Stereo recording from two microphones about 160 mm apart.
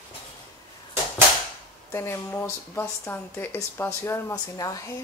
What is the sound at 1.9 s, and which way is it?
Speech, 15° left (ahead or behind).